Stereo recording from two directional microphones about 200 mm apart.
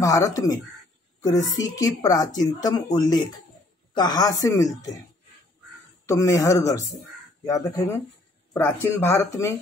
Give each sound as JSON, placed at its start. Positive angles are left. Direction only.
{"t": 0.0, "sound": "speech", "side_deg": 15}
{"t": 6.0, "sound": "speech", "side_deg": 15}